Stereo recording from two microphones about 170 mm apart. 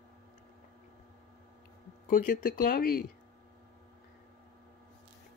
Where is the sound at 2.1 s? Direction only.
50° left (ahead or behind).